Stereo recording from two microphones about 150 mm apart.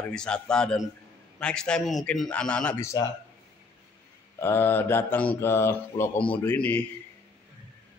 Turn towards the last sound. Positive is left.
turn(degrees=10)  # may be behind; listen again after turning